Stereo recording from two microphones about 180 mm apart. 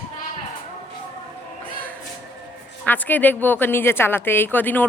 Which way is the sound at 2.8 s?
10° left (ahead or behind).